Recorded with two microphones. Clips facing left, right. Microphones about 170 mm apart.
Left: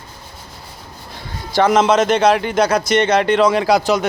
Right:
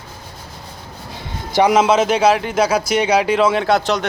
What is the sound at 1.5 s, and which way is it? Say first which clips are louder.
A man's voice: even; 10° right (ahead or behind).